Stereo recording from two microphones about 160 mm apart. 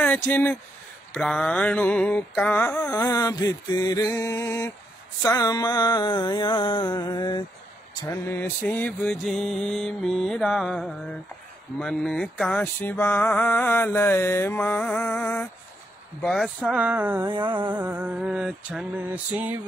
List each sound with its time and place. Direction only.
0.0 s speech: 10° left (ahead or behind)
1.1 s mantra: 5° left (ahead or behind)
5.2 s a sound: 20° left (ahead or behind)
7.9 s mantra: 20° left (ahead or behind); by 15.4 s 5° left (ahead or behind)
16.2 s music: centre (ahead or behind)
17.2 s music: 30° right (ahead or behind)
17.7 s music: 10° right (ahead or behind)